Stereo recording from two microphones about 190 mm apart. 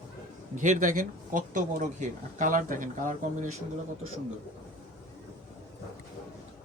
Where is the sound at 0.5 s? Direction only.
40° right (ahead or behind).